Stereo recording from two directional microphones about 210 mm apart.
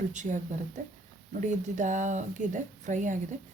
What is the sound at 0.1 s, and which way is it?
A woman's voice, 35° right (ahead or behind).